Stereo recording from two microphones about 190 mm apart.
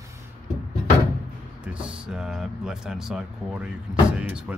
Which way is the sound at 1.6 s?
5° right (ahead or behind).